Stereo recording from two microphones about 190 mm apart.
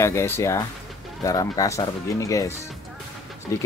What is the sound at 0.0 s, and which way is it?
Speech, 15° left (ahead or behind).